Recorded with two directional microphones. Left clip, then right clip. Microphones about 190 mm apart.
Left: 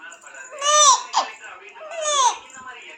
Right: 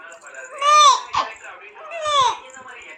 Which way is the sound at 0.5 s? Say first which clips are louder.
Right 3 dB; 20° left (ahead or behind).